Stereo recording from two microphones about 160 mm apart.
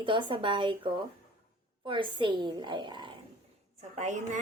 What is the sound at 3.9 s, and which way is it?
Speech, 45° right (ahead or behind).